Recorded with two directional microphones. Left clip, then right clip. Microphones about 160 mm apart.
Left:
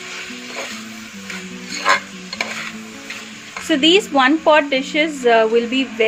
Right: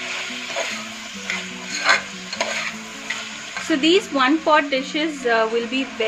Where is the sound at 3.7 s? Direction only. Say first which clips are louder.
Left 4 dB; 50° left (ahead or behind).